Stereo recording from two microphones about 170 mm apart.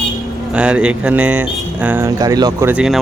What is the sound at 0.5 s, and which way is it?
Speech, 5° right (ahead or behind).